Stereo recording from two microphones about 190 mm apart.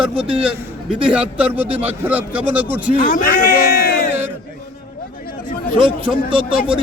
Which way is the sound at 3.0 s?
40° left (ahead or behind).